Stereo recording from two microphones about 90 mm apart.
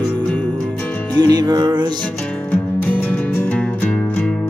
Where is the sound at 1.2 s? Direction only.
50° right (ahead or behind).